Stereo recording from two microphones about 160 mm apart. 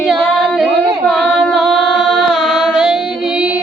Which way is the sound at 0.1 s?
Centre (ahead or behind).